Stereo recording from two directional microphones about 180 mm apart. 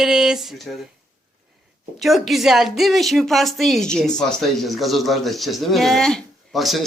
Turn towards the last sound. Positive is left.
turn(degrees=0)  # may be behind; listen again after turning